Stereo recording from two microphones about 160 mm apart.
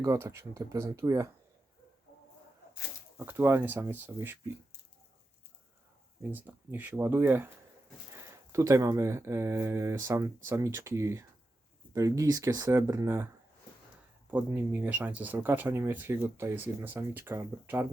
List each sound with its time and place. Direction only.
0.0 s speech: 20° right (ahead or behind)
3.2 s speech: 15° right (ahead or behind)
6.3 s speech: 10° right (ahead or behind)
14.3 s speech: 10° right (ahead or behind)